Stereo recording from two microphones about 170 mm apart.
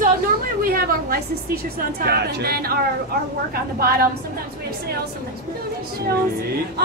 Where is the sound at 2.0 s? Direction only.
70° right (ahead or behind).